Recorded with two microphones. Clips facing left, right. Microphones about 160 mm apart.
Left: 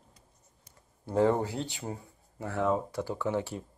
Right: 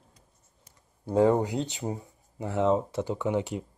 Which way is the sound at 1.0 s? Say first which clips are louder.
Right 3 dB; 15° right (ahead or behind).